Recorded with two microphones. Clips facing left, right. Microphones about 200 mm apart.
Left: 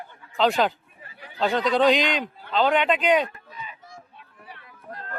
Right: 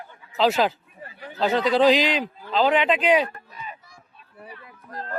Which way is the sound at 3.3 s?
50° right (ahead or behind).